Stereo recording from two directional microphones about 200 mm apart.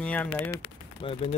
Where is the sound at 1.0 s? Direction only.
30° left (ahead or behind).